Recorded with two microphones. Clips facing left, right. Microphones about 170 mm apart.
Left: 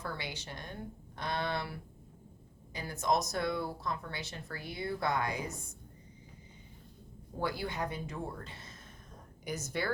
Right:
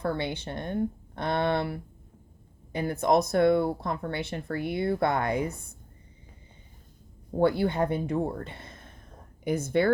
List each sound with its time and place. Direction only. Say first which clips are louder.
0.0 s speech: right 11 dB; 60° right (ahead or behind)
7.3 s speech: right 12 dB; 60° right (ahead or behind)